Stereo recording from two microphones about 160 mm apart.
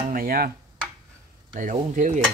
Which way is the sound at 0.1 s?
65° right (ahead or behind).